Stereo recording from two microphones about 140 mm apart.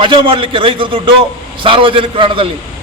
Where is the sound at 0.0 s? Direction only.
40° right (ahead or behind).